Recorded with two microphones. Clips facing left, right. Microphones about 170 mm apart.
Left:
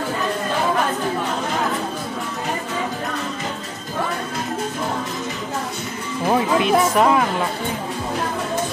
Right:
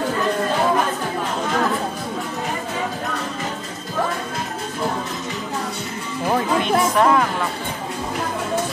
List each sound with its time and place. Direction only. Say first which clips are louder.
6.2 s music: left 2 dB; 10° left (ahead or behind)